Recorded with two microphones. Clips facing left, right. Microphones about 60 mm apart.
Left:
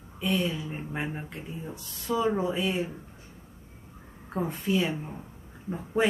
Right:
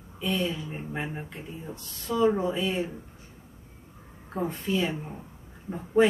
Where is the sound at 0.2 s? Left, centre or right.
Centre.